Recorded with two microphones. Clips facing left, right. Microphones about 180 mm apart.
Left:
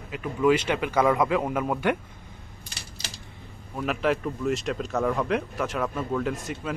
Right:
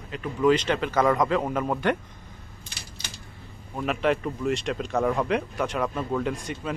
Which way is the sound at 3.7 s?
Centre (ahead or behind).